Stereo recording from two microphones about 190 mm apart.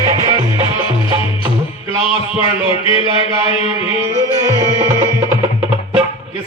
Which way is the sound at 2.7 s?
25° left (ahead or behind).